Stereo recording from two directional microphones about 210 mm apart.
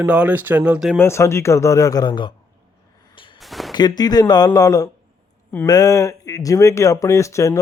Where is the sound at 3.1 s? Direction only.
25° left (ahead or behind).